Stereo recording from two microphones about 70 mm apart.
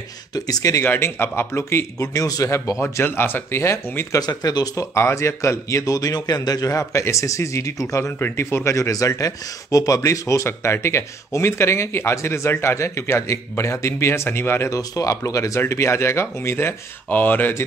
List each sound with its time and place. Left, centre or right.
0.3 s speech: left
0.8 s speech: left
2.1 s speech: left
3.0 s speech: left
4.2 s speech: left
4.9 s a man's voice: left
14.7 s a man's voice: left